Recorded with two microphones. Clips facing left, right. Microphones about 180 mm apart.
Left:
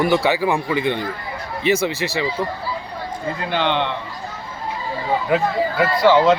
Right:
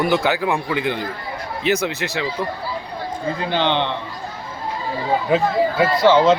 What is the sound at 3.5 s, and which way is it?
Speech, 30° right (ahead or behind).